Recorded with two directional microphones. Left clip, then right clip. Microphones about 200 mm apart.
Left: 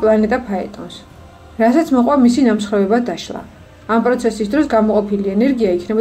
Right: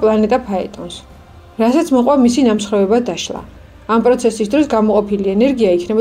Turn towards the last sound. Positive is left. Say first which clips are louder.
# right 3 dB
turn(degrees=-25)  # may be behind; listen again after turning